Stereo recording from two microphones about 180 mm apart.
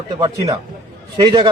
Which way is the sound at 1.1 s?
25° right (ahead or behind).